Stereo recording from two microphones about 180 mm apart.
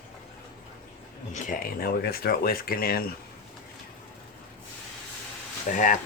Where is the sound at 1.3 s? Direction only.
45° left (ahead or behind).